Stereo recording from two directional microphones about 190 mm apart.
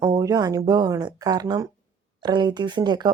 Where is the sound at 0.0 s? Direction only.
20° right (ahead or behind).